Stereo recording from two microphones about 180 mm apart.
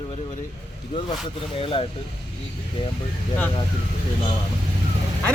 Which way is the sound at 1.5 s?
30° left (ahead or behind).